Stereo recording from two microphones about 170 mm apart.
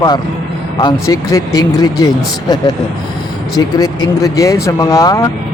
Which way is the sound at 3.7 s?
20° left (ahead or behind).